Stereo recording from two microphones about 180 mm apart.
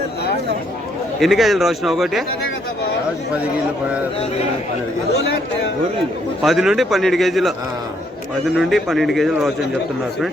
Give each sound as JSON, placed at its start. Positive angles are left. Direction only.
{"t": 1.2, "sound": "a man's voice", "side_deg": 0}
{"t": 6.4, "sound": "a man's voice", "side_deg": 0}